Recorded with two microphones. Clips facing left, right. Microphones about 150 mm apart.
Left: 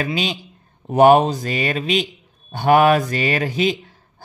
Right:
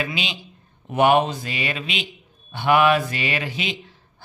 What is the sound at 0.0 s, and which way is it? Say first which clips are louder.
Speech: left 5 dB; 40° left (ahead or behind).